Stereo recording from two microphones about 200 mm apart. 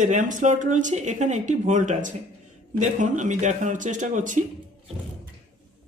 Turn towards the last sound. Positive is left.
turn(degrees=-40)  # may be behind; listen again after turning